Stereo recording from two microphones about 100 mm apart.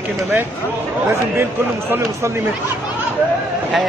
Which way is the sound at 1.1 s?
25° right (ahead or behind).